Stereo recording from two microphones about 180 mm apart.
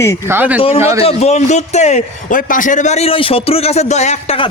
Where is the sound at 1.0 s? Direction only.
35° left (ahead or behind).